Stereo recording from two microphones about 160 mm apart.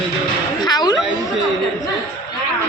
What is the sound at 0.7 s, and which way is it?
Speech, 25° left (ahead or behind).